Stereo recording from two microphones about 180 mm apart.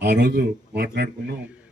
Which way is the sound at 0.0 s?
65° right (ahead or behind).